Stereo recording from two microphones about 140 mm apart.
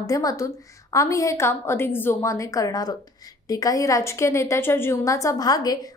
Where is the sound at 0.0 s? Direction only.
25° left (ahead or behind).